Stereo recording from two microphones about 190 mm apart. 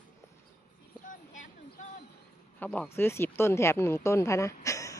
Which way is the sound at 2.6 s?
10° left (ahead or behind).